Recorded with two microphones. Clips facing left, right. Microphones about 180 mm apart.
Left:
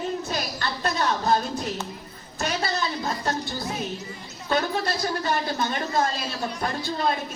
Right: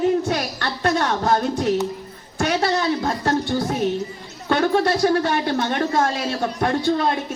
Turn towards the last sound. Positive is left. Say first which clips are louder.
# right 9 dB
turn(degrees=-75)  # may be behind; listen again after turning